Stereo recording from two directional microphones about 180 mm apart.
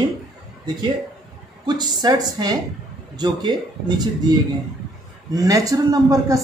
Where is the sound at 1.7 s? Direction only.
25° right (ahead or behind).